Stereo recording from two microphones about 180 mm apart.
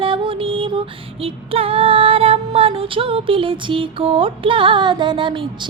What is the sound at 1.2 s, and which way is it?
Female singing, 30° right (ahead or behind).